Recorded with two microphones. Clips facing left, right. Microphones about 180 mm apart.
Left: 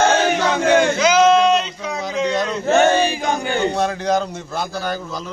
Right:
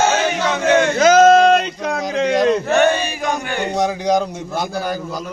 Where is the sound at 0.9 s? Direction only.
45° right (ahead or behind).